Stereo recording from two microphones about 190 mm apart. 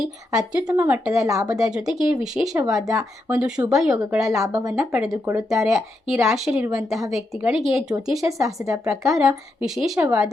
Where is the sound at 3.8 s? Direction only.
5° right (ahead or behind).